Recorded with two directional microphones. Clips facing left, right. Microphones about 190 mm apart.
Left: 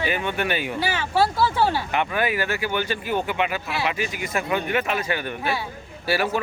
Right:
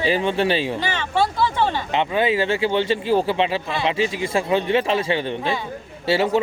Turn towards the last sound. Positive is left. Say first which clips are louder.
# right 4 dB
turn(degrees=-25)  # may be behind; listen again after turning